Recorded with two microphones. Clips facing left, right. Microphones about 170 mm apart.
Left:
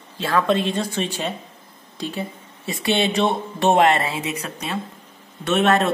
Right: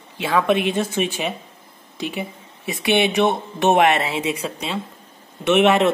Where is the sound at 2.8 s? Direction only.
15° right (ahead or behind).